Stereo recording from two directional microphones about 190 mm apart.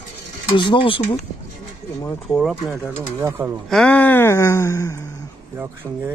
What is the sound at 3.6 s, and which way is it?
Speech, 5° left (ahead or behind).